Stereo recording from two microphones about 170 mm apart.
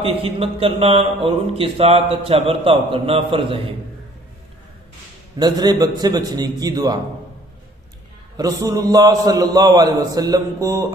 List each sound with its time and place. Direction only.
0.0 s a man's voice: 35° right (ahead or behind)
5.4 s a man's voice: 25° right (ahead or behind)
8.4 s a man's voice: 20° right (ahead or behind)